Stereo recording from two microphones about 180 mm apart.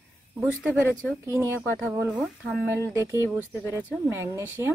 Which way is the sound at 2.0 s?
5° right (ahead or behind).